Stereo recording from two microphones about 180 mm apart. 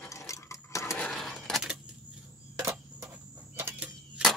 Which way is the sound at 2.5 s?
15° right (ahead or behind).